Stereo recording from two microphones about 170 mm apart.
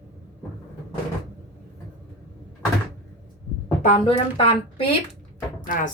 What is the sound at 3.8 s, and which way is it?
Speech, 35° left (ahead or behind).